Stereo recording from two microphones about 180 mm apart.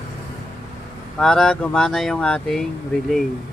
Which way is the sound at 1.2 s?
5° left (ahead or behind).